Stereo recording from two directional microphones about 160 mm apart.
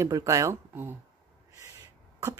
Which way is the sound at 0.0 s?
20° right (ahead or behind).